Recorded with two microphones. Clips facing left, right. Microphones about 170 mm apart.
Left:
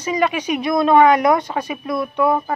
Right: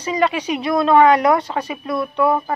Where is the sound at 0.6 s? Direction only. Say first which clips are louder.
Even; 15° left (ahead or behind).